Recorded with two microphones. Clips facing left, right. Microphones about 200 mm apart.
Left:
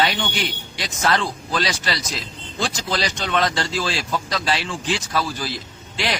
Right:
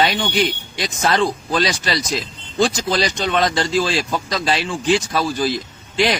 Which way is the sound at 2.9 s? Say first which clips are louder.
Right 4 dB; 20° right (ahead or behind).